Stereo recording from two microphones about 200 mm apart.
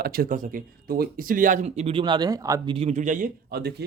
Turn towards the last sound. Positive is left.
turn(degrees=-55)  # may be behind; listen again after turning